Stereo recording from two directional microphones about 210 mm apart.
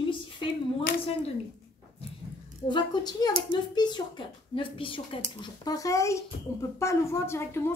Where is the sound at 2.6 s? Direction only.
20° left (ahead or behind).